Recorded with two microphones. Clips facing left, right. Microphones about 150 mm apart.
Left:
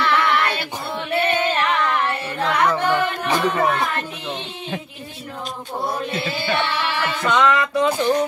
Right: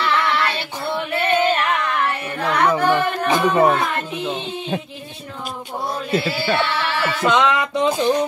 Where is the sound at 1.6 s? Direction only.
30° left (ahead or behind).